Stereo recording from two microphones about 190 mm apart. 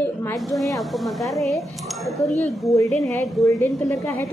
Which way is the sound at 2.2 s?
35° left (ahead or behind).